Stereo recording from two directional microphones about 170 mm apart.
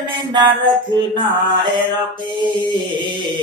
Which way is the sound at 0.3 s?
25° right (ahead or behind).